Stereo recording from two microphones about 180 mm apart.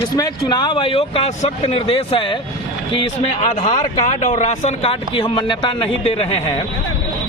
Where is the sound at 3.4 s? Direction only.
40° left (ahead or behind).